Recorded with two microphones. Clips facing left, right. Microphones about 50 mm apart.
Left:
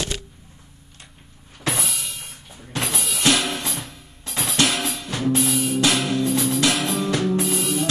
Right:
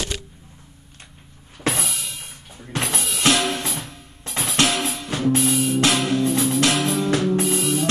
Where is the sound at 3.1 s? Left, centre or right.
Centre.